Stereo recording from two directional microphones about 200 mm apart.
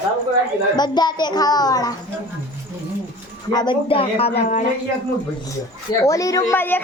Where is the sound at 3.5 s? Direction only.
25° left (ahead or behind).